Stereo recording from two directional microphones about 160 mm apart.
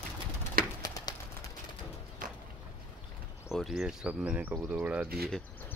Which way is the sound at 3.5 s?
Centre (ahead or behind).